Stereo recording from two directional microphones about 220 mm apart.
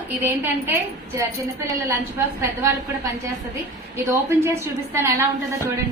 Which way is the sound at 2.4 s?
15° right (ahead or behind).